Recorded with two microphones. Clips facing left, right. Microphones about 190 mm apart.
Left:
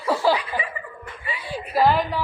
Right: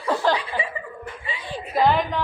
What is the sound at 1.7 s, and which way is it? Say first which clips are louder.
Speech: even; 5° left (ahead or behind).